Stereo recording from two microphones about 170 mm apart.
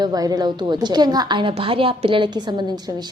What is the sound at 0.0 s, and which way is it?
A woman's voice, 20° right (ahead or behind).